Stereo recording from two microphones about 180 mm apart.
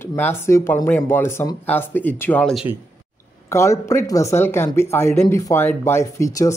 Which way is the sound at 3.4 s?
15° left (ahead or behind).